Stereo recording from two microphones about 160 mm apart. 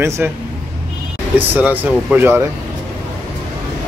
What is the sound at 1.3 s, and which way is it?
Speech, 10° right (ahead or behind).